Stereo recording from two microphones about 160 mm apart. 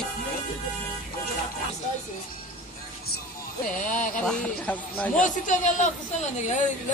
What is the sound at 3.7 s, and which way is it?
Speech, 55° left (ahead or behind).